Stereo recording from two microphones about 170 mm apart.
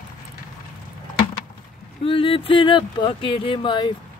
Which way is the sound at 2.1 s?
30° left (ahead or behind).